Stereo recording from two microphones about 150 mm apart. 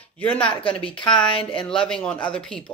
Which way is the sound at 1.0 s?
5° left (ahead or behind).